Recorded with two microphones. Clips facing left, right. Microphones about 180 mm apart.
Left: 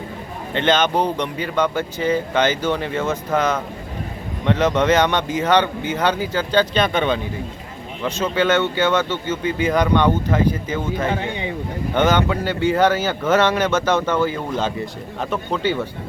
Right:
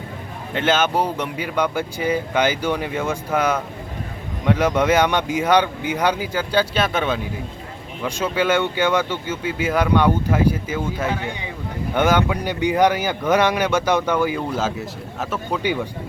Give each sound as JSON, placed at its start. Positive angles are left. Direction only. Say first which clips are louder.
{"t": 0.5, "sound": "speech", "louder": "left 1 dB", "side_deg": -5}
{"t": 11.1, "sound": "speech", "louder": "left 3 dB", "side_deg": 25}
{"t": 11.9, "sound": "speech", "louder": "left 1 dB", "side_deg": -10}